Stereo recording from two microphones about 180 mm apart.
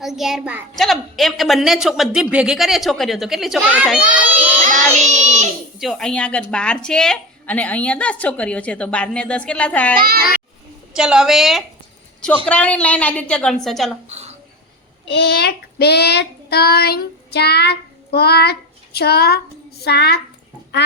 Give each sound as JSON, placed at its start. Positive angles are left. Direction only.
{"t": 0.0, "sound": "a child's voice", "side_deg": 0}
{"t": 4.9, "sound": "child singing", "side_deg": -40}
{"t": 5.8, "sound": "a woman's voice", "side_deg": 0}
{"t": 10.0, "sound": "babbling", "side_deg": -55}
{"t": 10.9, "sound": "a child's voice", "side_deg": -5}
{"t": 14.1, "sound": "a sound", "side_deg": -35}
{"t": 15.0, "sound": "child singing", "side_deg": 70}
{"t": 18.9, "sound": "a woman's voice", "side_deg": 60}